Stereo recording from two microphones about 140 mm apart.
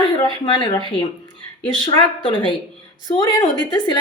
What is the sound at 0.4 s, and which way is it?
Speech, 35° left (ahead or behind).